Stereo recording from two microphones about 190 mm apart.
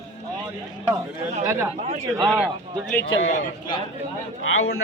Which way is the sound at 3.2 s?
40° left (ahead or behind).